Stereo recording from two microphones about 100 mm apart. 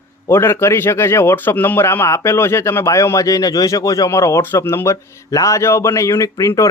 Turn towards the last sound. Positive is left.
turn(degrees=35)  # may be behind; listen again after turning